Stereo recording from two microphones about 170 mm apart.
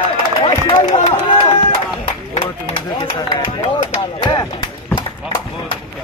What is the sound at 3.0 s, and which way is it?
Speech, 25° left (ahead or behind).